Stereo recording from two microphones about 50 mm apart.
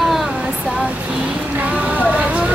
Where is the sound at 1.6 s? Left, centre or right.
Right.